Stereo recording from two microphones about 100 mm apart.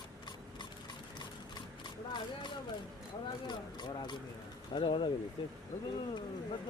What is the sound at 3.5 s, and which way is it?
Speech, 50° left (ahead or behind).